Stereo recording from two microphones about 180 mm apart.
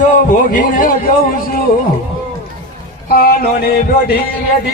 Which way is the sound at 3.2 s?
60° left (ahead or behind).